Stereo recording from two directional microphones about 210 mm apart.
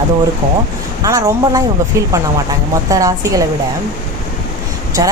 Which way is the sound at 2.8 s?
15° right (ahead or behind).